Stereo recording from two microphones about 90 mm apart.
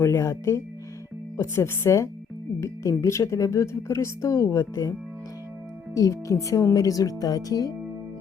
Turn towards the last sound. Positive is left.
turn(degrees=45)  # may be behind; listen again after turning